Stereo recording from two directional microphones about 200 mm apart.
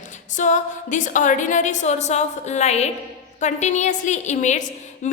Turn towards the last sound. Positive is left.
turn(degrees=40)  # may be behind; listen again after turning